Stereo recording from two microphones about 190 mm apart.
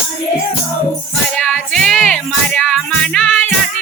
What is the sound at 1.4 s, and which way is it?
Music, centre (ahead or behind).